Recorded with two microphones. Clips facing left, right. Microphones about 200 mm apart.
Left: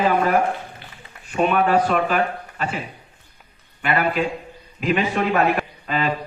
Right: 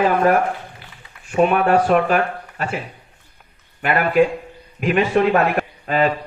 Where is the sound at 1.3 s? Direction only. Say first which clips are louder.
Right 3 dB; 45° right (ahead or behind).